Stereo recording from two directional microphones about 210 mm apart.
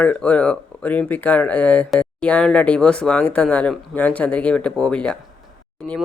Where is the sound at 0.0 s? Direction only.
5° left (ahead or behind).